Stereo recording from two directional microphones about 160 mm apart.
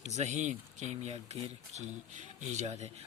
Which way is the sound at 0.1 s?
45° right (ahead or behind).